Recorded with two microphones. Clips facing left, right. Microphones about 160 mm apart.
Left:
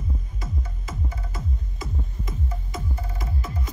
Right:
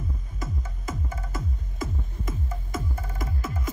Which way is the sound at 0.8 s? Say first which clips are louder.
Right 5 dB; 50° right (ahead or behind).